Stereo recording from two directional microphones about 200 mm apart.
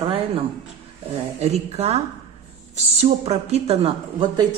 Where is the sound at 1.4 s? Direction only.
35° right (ahead or behind).